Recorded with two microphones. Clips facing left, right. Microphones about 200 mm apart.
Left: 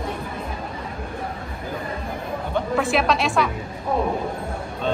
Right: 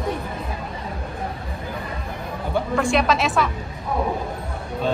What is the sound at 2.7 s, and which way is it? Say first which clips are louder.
Speech: right 1 dB; centre (ahead or behind).